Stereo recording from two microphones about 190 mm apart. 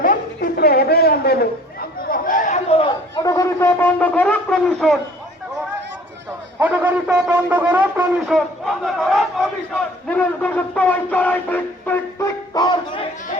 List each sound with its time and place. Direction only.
0.0 s chatter: 45° left (ahead or behind); by 2.9 s 30° left (ahead or behind)
3.2 s shofar: 15° left (ahead or behind)
6.6 s a sound: 10° right (ahead or behind); by 12.3 s 10° left (ahead or behind)
12.5 s music: 25° left (ahead or behind)